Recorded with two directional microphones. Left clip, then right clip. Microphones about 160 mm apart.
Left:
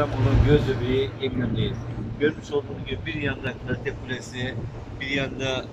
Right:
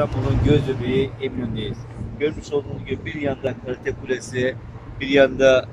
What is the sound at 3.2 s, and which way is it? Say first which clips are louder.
Speech: right 8 dB; 60° right (ahead or behind).